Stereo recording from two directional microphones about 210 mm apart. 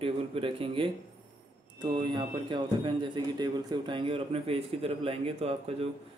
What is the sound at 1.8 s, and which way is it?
Speech, 20° right (ahead or behind).